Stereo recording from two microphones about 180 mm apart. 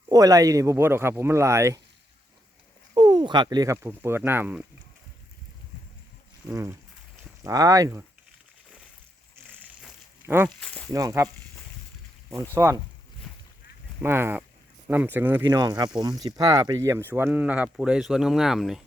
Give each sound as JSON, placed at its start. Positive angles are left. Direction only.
{"t": 0.1, "sound": "speech", "side_deg": -20}
{"t": 2.9, "sound": "speech", "side_deg": -25}
{"t": 6.4, "sound": "speech", "side_deg": -10}
{"t": 10.2, "sound": "speech", "side_deg": -10}
{"t": 10.6, "sound": "speech", "side_deg": 5}
{"t": 10.9, "sound": "speech", "side_deg": -15}
{"t": 12.5, "sound": "speech", "side_deg": -15}
{"t": 14.0, "sound": "speech", "side_deg": -15}
{"t": 15.4, "sound": "speech", "side_deg": -20}